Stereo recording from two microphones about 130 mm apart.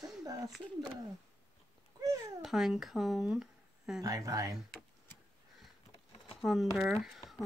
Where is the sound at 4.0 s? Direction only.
25° right (ahead or behind).